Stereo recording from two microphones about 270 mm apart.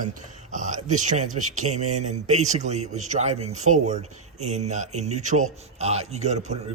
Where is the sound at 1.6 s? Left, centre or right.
Right.